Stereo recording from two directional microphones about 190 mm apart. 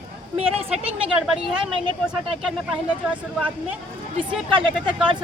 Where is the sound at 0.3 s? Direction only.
30° right (ahead or behind).